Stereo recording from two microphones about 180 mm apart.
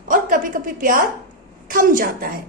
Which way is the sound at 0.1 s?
50° right (ahead or behind).